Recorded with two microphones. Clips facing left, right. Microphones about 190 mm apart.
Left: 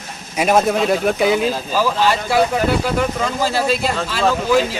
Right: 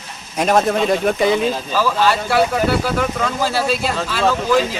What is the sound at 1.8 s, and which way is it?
Speech, 15° left (ahead or behind).